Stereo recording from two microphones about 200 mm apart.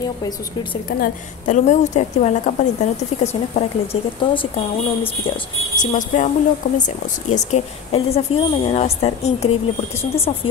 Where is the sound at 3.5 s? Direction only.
30° left (ahead or behind).